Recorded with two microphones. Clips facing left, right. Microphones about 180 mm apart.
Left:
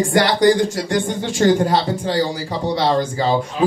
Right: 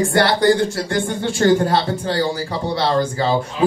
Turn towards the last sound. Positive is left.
turn(degrees=20)  # may be behind; listen again after turning